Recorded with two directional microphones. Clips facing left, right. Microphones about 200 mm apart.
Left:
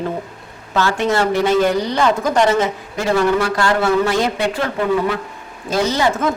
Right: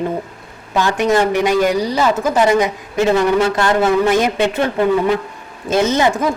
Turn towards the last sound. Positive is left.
turn(degrees=-15)  # may be behind; listen again after turning